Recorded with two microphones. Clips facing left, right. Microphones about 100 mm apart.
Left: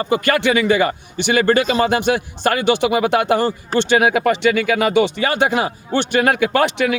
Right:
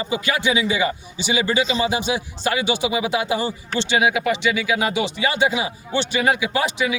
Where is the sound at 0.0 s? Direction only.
55° left (ahead or behind).